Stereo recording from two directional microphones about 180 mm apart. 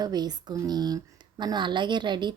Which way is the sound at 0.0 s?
20° right (ahead or behind).